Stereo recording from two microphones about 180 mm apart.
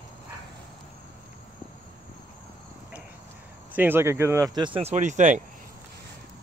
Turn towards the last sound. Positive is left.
turn(degrees=-45)  # may be behind; listen again after turning